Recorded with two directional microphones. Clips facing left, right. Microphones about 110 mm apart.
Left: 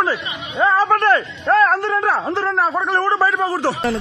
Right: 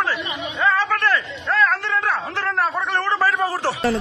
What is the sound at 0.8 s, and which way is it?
A man's voice, 45° left (ahead or behind).